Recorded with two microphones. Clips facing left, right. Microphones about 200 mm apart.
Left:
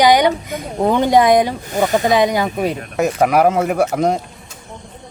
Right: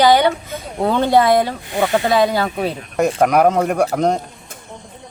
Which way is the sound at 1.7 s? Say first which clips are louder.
Left 1 dB; 40° left (ahead or behind).